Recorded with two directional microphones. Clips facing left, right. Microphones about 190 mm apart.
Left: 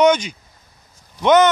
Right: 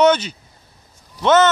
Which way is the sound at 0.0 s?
10° left (ahead or behind).